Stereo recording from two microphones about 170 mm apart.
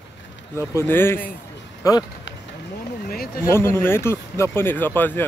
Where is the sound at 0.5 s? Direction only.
15° left (ahead or behind).